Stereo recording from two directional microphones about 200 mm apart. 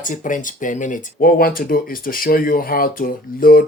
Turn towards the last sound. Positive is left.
turn(degrees=45)  # may be behind; listen again after turning